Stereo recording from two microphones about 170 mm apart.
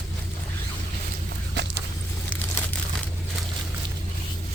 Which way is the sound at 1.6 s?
90° right.